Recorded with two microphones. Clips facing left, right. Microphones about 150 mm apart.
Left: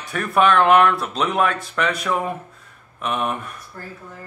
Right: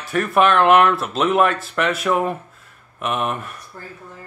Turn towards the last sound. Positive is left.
turn(degrees=0)  # may be behind; listen again after turning